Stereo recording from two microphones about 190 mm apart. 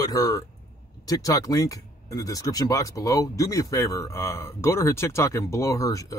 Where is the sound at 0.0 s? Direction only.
20° left (ahead or behind).